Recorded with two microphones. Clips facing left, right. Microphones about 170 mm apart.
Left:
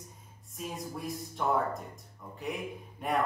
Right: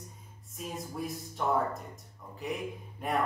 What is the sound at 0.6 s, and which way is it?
Speech, centre (ahead or behind).